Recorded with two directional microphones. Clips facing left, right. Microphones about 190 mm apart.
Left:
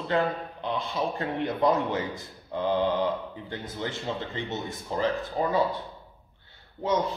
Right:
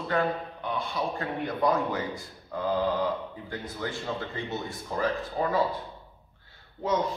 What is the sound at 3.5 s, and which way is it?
A man's voice, 20° left (ahead or behind).